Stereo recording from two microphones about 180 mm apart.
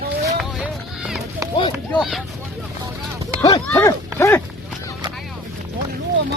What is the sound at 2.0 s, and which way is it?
Vehicle, centre (ahead or behind).